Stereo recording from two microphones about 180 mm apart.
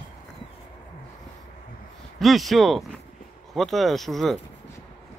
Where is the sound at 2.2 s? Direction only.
Centre (ahead or behind).